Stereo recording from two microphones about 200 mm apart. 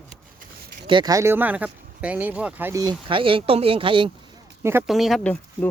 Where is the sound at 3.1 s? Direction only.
25° right (ahead or behind).